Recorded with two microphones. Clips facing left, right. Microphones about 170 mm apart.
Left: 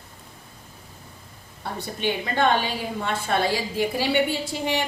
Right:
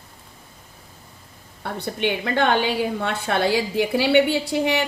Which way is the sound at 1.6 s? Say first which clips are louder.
Right 3 dB; 65° right (ahead or behind).